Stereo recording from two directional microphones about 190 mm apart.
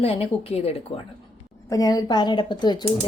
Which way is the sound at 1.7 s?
20° left (ahead or behind).